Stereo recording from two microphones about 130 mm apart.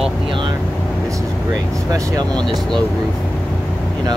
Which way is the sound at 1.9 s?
25° right (ahead or behind).